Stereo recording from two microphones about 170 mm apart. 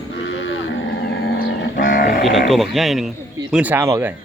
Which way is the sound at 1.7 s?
55° left (ahead or behind).